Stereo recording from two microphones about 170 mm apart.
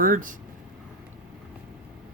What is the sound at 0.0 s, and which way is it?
Speech, 50° right (ahead or behind).